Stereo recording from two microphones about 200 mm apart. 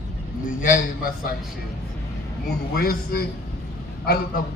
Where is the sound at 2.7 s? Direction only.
50° left (ahead or behind).